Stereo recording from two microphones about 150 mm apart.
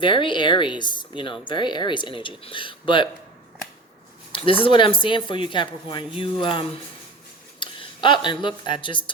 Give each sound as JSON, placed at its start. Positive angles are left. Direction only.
{"t": 0.0, "sound": "speech", "side_deg": 35}
{"t": 4.3, "sound": "speech", "side_deg": 35}